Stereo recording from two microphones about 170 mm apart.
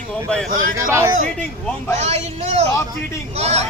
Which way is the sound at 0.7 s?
15° right (ahead or behind).